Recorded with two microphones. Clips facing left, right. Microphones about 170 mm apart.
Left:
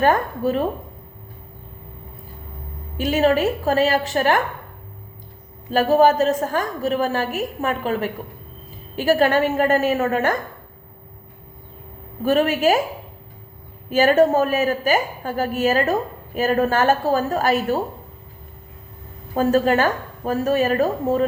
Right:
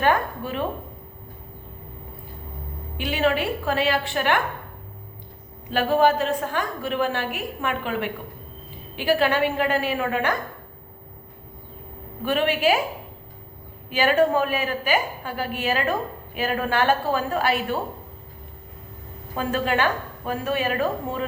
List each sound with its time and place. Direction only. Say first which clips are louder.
0.0 s a woman's voice: left 4 dB; 40° left (ahead or behind)
3.0 s a woman's voice: left 5 dB; 40° left (ahead or behind)
5.7 s a woman's voice: left 4 dB; 40° left (ahead or behind)
12.2 s a woman's voice: left 4 dB; 40° left (ahead or behind)
13.9 s a woman's voice: left 4 dB; 40° left (ahead or behind)
19.3 s a woman's voice: left 7 dB; 40° left (ahead or behind)